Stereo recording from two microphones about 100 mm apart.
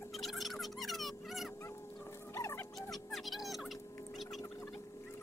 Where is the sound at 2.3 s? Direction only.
30° left (ahead or behind).